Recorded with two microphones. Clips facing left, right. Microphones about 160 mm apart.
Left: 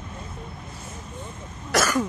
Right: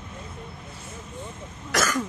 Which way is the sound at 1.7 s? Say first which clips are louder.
Left 3 dB; 30° left (ahead or behind).